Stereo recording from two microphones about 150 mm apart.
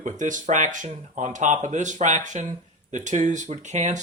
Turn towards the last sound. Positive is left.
turn(degrees=-50)  # may be behind; listen again after turning